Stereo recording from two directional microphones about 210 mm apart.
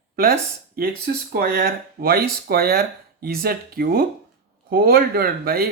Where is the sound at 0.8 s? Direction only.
45° right (ahead or behind).